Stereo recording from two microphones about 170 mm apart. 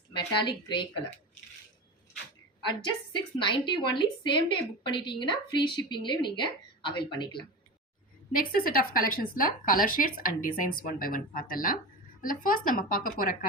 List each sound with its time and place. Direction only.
0.1 s a woman's voice: 25° left (ahead or behind)
3.3 s a woman's voice: 30° left (ahead or behind)
8.3 s speech: 55° left (ahead or behind)